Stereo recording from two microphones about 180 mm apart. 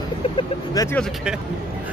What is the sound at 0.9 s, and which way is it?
Speech, centre (ahead or behind).